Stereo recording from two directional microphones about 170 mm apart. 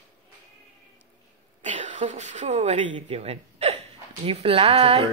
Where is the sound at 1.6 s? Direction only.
45° right (ahead or behind).